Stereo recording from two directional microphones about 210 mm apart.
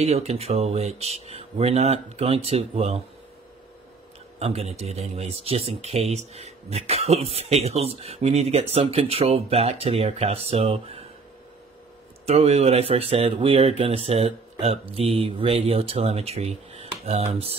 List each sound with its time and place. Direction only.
0.0 s speech: 30° right (ahead or behind)
4.4 s speech: 30° right (ahead or behind)
12.3 s speech: 30° right (ahead or behind)